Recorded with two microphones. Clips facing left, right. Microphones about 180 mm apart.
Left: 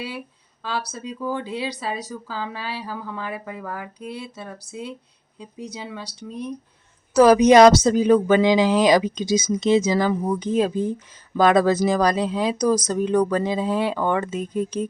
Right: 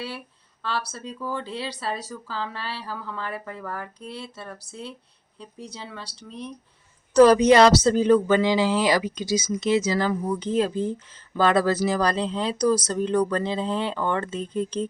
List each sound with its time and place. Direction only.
0.6 s speech: 15° left (ahead or behind)